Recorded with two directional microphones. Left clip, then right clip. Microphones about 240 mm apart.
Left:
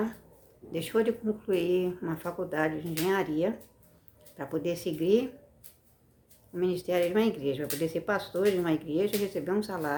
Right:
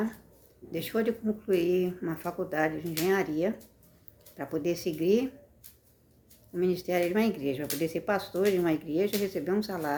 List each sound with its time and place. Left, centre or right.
0.7 s speech: centre
6.5 s speech: centre